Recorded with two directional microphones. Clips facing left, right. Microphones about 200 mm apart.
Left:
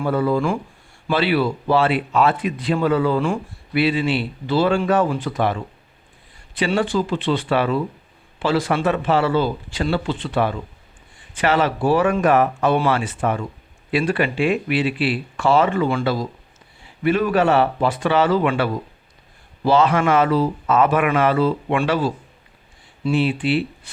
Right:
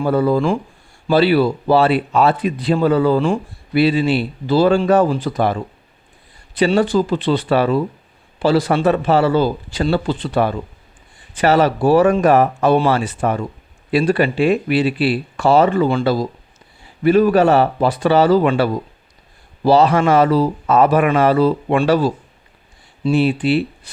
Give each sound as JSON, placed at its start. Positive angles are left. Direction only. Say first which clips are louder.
{"t": 0.0, "sound": "speech", "louder": "right 4 dB", "side_deg": -35}